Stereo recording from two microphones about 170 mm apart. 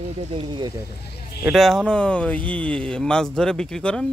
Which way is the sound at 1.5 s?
Centre (ahead or behind).